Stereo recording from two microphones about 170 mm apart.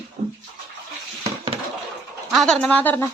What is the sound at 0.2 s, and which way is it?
Bathtub, 40° right (ahead or behind).